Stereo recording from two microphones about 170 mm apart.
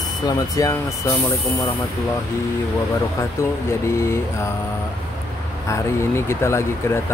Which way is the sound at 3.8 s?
15° left (ahead or behind).